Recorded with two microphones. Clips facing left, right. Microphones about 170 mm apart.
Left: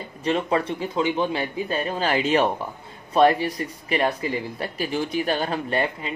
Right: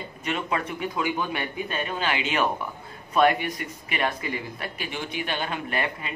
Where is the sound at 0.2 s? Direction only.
35° left (ahead or behind).